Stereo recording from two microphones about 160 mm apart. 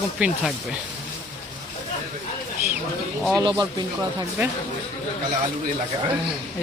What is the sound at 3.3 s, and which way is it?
Speech, 25° right (ahead or behind).